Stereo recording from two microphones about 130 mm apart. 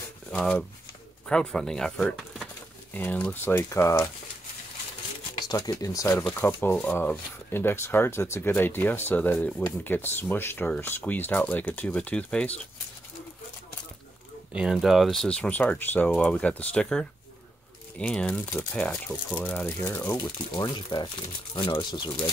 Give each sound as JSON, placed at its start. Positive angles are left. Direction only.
{"t": 0.3, "sound": "speech", "side_deg": 5}
{"t": 5.5, "sound": "speech", "side_deg": 30}
{"t": 14.5, "sound": "speech", "side_deg": -5}
{"t": 20.0, "sound": "speech", "side_deg": 25}